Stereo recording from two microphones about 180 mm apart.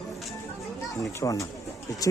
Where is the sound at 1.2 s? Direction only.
25° left (ahead or behind).